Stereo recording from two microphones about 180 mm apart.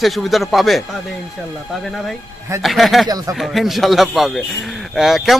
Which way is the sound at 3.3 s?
Centre (ahead or behind).